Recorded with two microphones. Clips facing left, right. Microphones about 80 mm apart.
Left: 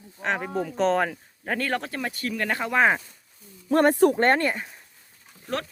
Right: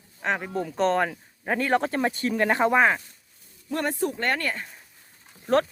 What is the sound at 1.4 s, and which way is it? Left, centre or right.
Speech, centre.